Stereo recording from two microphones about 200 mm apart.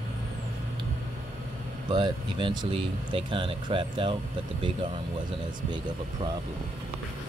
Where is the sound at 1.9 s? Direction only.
25° right (ahead or behind).